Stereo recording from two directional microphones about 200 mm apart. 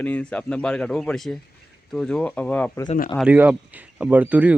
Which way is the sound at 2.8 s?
45° left (ahead or behind).